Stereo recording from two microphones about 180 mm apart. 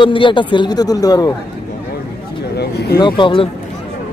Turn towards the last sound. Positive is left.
turn(degrees=30)  # may be behind; listen again after turning